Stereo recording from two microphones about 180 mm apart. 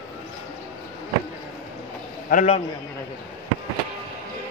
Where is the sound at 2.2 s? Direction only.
45° left (ahead or behind).